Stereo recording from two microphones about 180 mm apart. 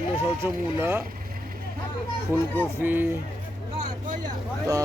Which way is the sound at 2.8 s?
10° right (ahead or behind).